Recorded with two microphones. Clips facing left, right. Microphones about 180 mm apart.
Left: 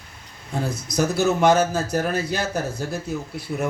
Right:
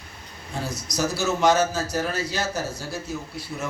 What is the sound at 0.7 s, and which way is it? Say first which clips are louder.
A man's voice: left 3 dB; 55° left (ahead or behind).